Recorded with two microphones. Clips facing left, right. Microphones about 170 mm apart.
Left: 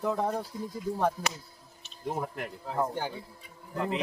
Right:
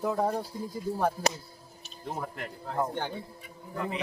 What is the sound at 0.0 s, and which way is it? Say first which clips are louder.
Speech: right 1 dB; 5° right (ahead or behind).